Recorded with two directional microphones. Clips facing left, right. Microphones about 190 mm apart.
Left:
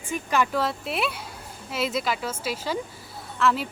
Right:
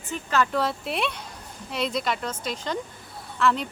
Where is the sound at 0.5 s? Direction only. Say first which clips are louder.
Even; centre (ahead or behind).